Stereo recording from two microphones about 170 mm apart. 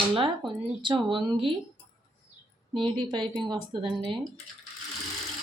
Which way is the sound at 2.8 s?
30° right (ahead or behind).